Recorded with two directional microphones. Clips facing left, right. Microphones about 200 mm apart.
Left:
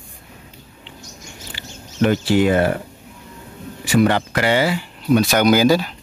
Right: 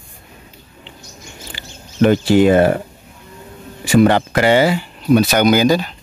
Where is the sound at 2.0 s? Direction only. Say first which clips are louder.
Right 5 dB; 25° right (ahead or behind).